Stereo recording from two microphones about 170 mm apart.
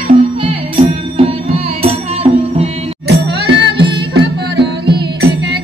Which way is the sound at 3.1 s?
85° right.